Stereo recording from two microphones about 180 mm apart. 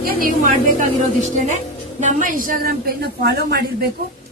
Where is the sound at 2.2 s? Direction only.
50° right (ahead or behind).